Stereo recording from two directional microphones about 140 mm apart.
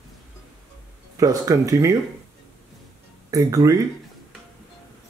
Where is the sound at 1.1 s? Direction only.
25° right (ahead or behind).